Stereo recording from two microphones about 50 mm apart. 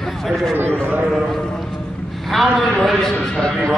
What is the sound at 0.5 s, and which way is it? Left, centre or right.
Speech, right.